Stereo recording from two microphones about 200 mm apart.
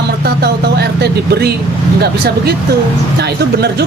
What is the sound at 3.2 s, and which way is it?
Speech, 55° right (ahead or behind).